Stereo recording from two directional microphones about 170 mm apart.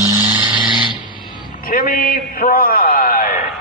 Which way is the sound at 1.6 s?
55° left (ahead or behind).